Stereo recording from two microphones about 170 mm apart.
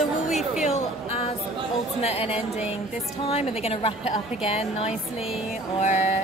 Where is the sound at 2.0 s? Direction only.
35° left (ahead or behind).